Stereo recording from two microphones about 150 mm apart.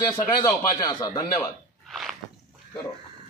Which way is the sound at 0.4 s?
25° left (ahead or behind).